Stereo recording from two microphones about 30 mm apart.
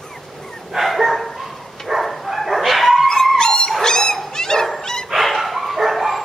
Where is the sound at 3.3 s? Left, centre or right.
Left.